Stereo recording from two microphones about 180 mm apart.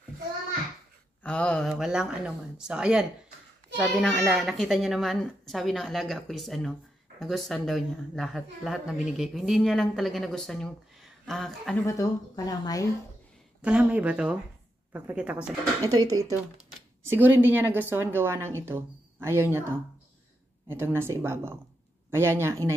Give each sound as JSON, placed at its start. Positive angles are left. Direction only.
{"t": 1.2, "sound": "speech", "side_deg": 5}
{"t": 11.8, "sound": "speech", "side_deg": 15}
{"t": 13.6, "sound": "speech", "side_deg": -5}
{"t": 15.8, "sound": "speech", "side_deg": -20}